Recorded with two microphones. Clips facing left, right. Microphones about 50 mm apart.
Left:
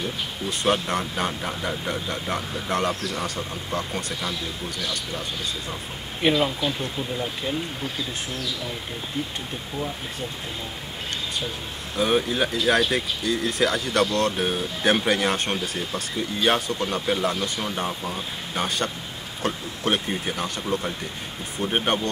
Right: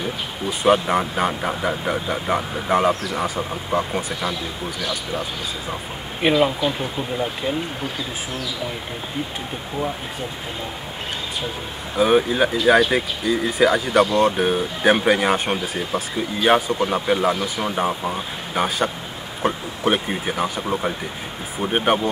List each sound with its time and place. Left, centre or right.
0.0 s speech: centre
1.5 s speech: centre
1.9 s speech: centre
6.2 s speech: centre
11.9 s speech: centre